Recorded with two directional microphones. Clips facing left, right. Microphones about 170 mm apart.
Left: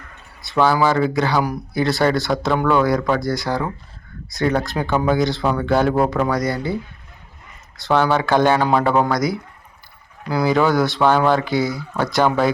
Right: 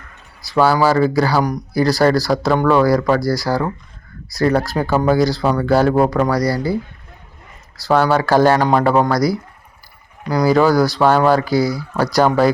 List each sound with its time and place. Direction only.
0.4 s speech: 5° right (ahead or behind)
3.2 s speech: 20° left (ahead or behind)
3.4 s speech: 5° right (ahead or behind)
6.5 s a man's voice: 35° right (ahead or behind)
7.9 s speech: 5° right (ahead or behind)
10.4 s speech: centre (ahead or behind)
11.5 s speech: 20° left (ahead or behind)
11.9 s speech: centre (ahead or behind)